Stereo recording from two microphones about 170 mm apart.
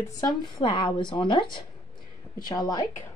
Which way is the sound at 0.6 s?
30° left (ahead or behind).